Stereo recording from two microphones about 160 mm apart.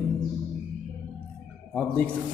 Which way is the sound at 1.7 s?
10° left (ahead or behind).